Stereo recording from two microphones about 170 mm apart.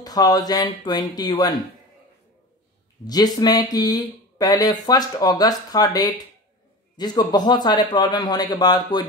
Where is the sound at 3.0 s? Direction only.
25° left (ahead or behind).